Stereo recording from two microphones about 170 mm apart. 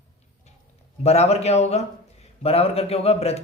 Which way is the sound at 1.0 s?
40° left (ahead or behind).